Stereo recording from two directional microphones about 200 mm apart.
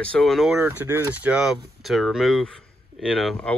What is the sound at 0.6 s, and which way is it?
Speech, 10° right (ahead or behind).